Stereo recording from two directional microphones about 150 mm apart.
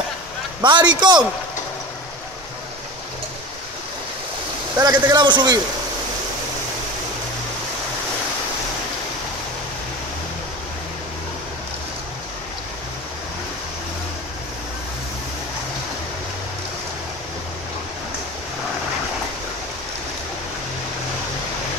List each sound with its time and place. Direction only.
0.6 s a man's voice: 30° right (ahead or behind)
4.7 s a man's voice: 20° right (ahead or behind)